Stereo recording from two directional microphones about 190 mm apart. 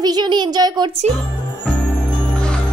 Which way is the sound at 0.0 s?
20° right (ahead or behind).